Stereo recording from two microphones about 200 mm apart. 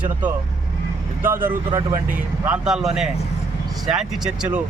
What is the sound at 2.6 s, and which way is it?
Speech, 5° right (ahead or behind).